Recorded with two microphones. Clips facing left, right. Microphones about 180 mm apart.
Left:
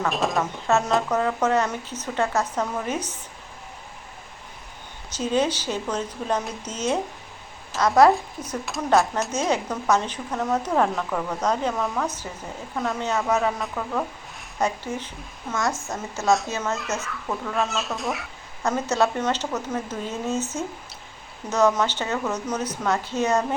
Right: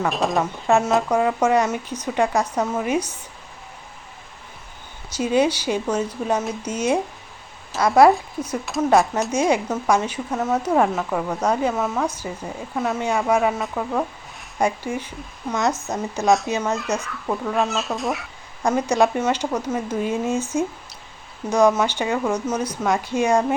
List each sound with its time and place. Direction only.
0.1 s speech: centre (ahead or behind)
0.7 s speech: 15° right (ahead or behind)
5.1 s speech: 10° right (ahead or behind)
16.7 s speech: centre (ahead or behind)
18.6 s speech: 15° right (ahead or behind)
21.8 s speech: 10° right (ahead or behind)